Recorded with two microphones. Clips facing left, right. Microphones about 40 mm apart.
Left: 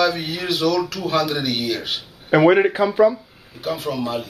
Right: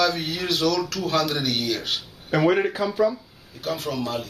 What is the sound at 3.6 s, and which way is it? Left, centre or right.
Speech, centre.